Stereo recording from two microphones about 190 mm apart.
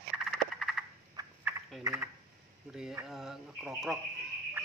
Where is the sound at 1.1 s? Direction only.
15° right (ahead or behind).